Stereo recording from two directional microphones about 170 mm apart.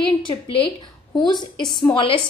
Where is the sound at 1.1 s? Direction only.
25° left (ahead or behind).